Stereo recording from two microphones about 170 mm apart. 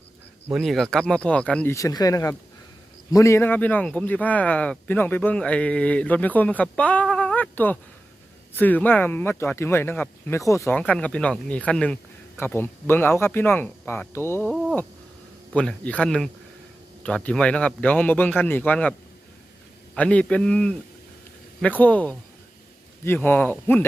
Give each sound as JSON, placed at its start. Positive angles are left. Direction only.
{"t": 0.4, "sound": "speech", "side_deg": 0}
{"t": 1.7, "sound": "a man's voice", "side_deg": 20}
{"t": 15.5, "sound": "a man's voice", "side_deg": 10}
{"t": 20.0, "sound": "a man's voice", "side_deg": 5}